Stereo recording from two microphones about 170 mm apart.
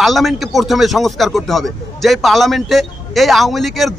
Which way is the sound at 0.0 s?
Centre (ahead or behind).